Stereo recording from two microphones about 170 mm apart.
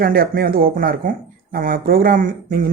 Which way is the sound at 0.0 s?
60° right (ahead or behind).